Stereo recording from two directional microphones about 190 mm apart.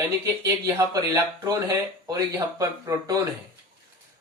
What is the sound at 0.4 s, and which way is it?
Speech, 20° right (ahead or behind).